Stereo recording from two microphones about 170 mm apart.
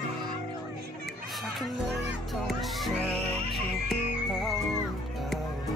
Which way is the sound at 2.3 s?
Centre (ahead or behind).